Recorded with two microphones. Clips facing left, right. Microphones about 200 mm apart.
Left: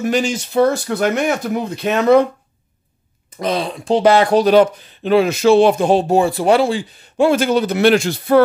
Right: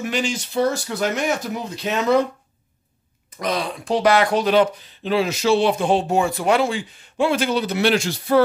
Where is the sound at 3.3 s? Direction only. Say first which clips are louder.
Left 4 dB; 30° left (ahead or behind).